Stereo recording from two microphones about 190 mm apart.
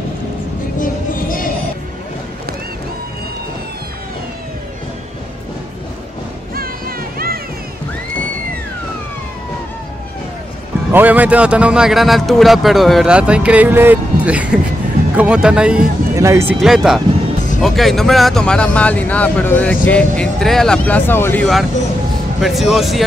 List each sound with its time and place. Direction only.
0.7 s music: 50° left (ahead or behind)
6.5 s music: 50° right (ahead or behind)
10.9 s speech: 10° right (ahead or behind)
16.5 s speech: centre (ahead or behind)